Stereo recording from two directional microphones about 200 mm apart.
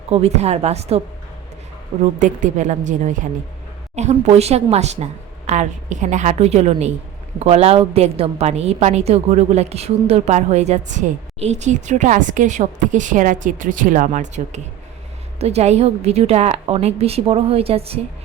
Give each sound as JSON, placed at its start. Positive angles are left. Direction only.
{"t": 0.1, "sound": "a woman's voice", "side_deg": -30}
{"t": 2.1, "sound": "a woman's voice", "side_deg": -40}